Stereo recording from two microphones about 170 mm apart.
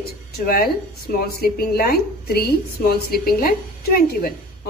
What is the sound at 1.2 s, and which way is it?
A woman's voice, 65° left (ahead or behind).